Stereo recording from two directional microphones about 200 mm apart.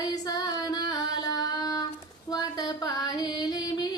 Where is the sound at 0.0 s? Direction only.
20° left (ahead or behind).